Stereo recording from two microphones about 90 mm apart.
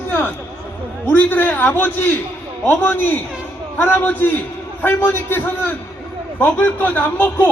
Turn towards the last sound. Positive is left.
turn(degrees=20)  # may be behind; listen again after turning